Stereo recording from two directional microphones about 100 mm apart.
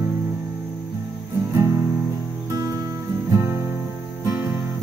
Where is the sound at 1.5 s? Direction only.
30° right (ahead or behind).